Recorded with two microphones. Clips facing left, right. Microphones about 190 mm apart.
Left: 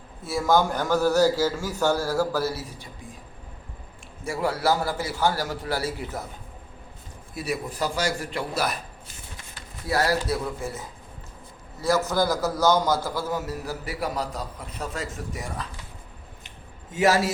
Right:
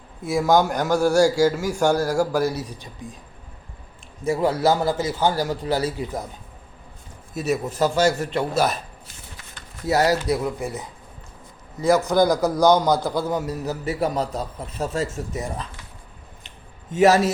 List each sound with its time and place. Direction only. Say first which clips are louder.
0.3 s a man's voice: right 3 dB; 15° right (ahead or behind)
4.2 s a man's voice: right 6 dB; 20° right (ahead or behind)
7.3 s a man's voice: right 6 dB; 25° right (ahead or behind)
9.8 s a man's voice: right 4 dB; 20° right (ahead or behind)
16.9 s a man's voice: right 5 dB; 20° right (ahead or behind)